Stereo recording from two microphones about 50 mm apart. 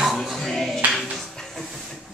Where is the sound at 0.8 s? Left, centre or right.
Right.